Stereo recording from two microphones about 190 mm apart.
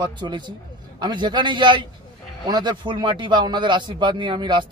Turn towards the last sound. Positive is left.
turn(degrees=-25)  # may be behind; listen again after turning